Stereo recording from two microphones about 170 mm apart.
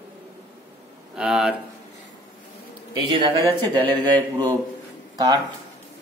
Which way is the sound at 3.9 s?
25° right (ahead or behind).